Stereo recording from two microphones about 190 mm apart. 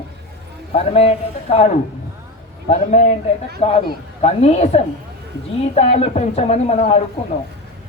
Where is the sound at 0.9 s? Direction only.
30° left (ahead or behind).